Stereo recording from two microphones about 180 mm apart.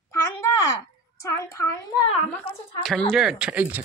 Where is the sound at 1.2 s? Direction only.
15° left (ahead or behind).